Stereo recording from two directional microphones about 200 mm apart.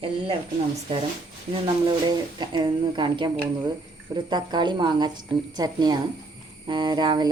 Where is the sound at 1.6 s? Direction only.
20° right (ahead or behind).